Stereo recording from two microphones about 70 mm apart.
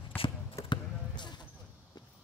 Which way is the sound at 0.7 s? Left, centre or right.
Left.